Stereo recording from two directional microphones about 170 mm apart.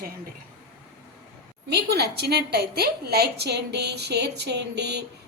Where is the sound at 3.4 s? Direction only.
75° right (ahead or behind).